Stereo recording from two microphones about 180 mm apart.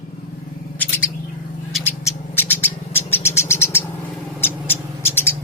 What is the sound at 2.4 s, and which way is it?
Bird, 10° left (ahead or behind).